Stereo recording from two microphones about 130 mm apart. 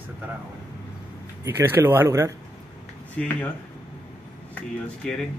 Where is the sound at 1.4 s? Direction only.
20° right (ahead or behind).